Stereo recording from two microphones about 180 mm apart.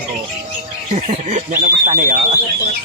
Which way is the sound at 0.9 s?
40° right (ahead or behind).